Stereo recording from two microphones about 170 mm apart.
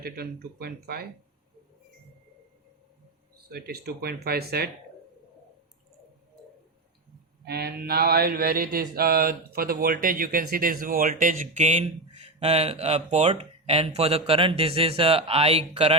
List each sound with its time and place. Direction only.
0.0 s speech: 65° right (ahead or behind)
3.5 s speech: 70° right (ahead or behind)
7.4 s mantra: 70° right (ahead or behind); by 16.0 s 35° right (ahead or behind)